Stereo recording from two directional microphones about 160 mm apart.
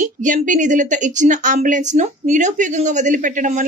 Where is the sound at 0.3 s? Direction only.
50° right (ahead or behind).